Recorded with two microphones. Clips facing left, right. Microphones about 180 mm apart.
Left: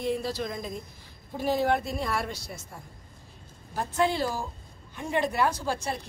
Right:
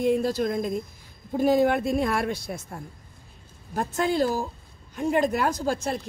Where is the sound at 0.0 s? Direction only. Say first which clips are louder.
Right 7 dB; 50° right (ahead or behind).